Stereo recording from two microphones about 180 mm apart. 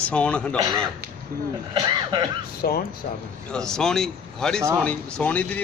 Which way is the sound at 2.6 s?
60° left (ahead or behind).